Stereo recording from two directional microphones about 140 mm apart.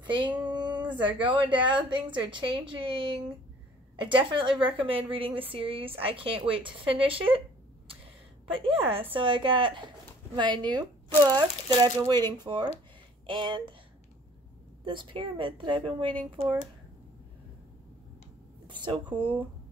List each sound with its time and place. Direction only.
0.0 s a sound: 35° right (ahead or behind)
1.2 s a woman's voice: 35° right (ahead or behind)
8.5 s a woman's voice: 40° right (ahead or behind)
14.9 s a woman's voice: 35° right (ahead or behind)
18.7 s a woman's voice: 35° right (ahead or behind)